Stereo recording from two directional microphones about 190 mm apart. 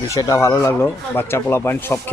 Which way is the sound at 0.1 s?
15° left (ahead or behind).